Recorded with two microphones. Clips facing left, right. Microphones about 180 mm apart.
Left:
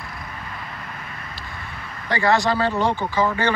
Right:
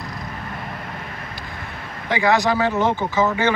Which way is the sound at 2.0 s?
20° right (ahead or behind).